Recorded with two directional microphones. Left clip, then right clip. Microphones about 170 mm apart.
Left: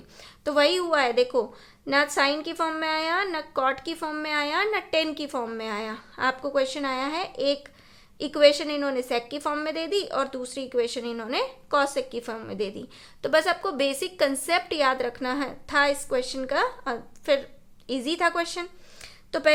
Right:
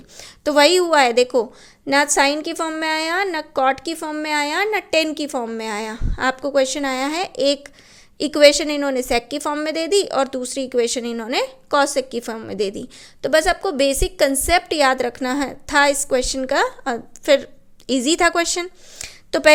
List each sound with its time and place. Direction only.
0.2 s a woman's voice: 40° right (ahead or behind)